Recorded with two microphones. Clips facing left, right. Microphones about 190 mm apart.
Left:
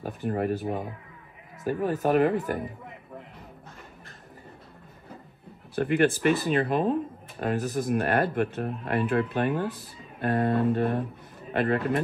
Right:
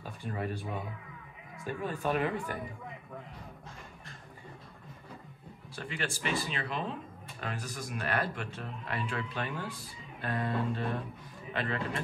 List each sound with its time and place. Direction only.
0.0 s speech: 55° left (ahead or behind)
1.7 s speech: 40° left (ahead or behind)
5.8 s speech: 55° left (ahead or behind)